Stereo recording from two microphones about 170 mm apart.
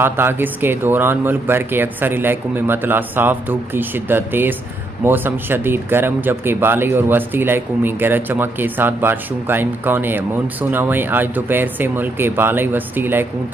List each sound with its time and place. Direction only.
0.0 s speech: 15° right (ahead or behind)